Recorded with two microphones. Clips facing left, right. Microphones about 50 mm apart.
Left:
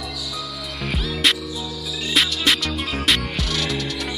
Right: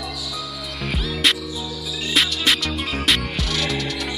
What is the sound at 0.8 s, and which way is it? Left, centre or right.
Music, centre.